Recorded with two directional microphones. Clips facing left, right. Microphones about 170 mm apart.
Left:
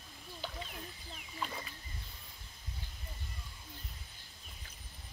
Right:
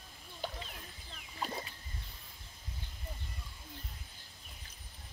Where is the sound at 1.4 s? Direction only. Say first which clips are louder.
Right 2 dB; 35° right (ahead or behind).